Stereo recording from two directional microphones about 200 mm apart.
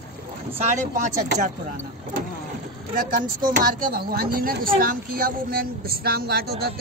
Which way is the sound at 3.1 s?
45° right (ahead or behind).